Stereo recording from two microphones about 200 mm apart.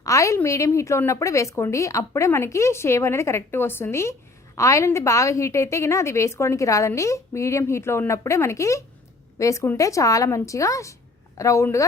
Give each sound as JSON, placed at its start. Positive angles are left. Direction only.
{"t": 0.0, "sound": "a woman's voice", "side_deg": 15}